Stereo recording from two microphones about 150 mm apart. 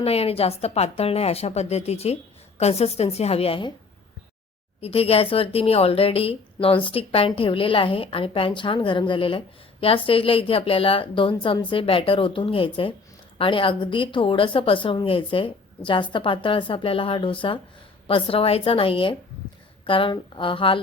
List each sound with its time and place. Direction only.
0.0 s a woman's voice: 40° left (ahead or behind)
4.8 s a woman's voice: 40° left (ahead or behind)